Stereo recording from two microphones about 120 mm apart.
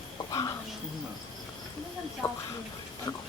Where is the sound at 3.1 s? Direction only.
25° left (ahead or behind).